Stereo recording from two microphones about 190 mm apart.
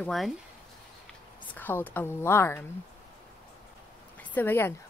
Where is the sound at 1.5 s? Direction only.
10° left (ahead or behind).